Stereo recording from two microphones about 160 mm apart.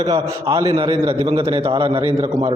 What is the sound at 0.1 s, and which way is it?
A man's voice, 25° right (ahead or behind).